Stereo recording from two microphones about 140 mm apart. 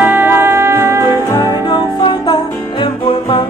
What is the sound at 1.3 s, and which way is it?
Music, 20° left (ahead or behind).